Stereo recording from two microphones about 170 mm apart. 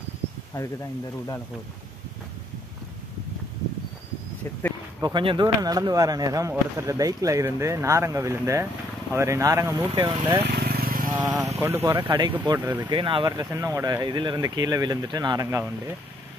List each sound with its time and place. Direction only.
5.0 s speech: 30° right (ahead or behind)
10.4 s vehicle: 70° right (ahead or behind)
11.1 s speech: 25° right (ahead or behind)